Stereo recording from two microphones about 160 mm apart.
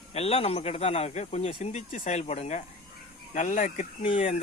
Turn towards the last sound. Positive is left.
turn(degrees=35)  # may be behind; listen again after turning